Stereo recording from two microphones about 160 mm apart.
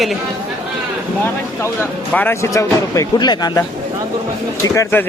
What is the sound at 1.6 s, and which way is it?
Speech, 10° left (ahead or behind).